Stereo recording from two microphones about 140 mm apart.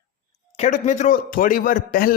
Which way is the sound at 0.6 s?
60° left (ahead or behind).